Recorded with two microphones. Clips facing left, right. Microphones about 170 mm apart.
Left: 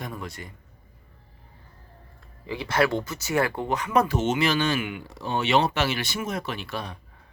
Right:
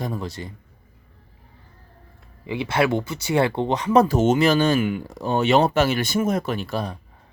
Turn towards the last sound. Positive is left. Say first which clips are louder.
# right 7 dB
turn(degrees=-40)  # may be behind; listen again after turning